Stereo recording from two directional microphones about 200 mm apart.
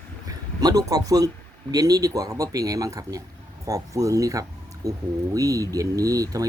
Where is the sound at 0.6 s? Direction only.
20° right (ahead or behind).